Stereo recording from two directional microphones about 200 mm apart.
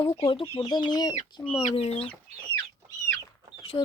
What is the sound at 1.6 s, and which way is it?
Speech, 30° left (ahead or behind).